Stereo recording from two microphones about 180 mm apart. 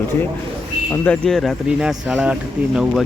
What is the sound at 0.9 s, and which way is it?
Speech, 5° left (ahead or behind).